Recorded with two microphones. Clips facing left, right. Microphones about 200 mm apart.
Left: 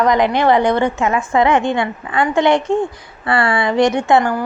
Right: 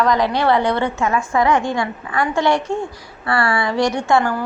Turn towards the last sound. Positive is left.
turn(degrees=15)  # may be behind; listen again after turning